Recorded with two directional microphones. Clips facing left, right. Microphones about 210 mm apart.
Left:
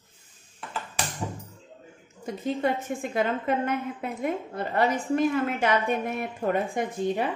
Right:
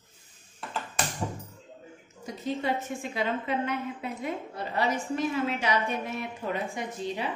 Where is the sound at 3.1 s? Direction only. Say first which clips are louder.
Left 4 dB; 50° left (ahead or behind).